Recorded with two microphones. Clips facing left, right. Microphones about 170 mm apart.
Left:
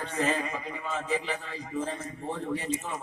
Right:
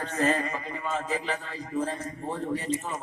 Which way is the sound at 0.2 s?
45° right (ahead or behind).